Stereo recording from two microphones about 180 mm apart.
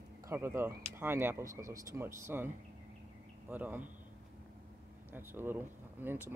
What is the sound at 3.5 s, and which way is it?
Speech, 10° right (ahead or behind).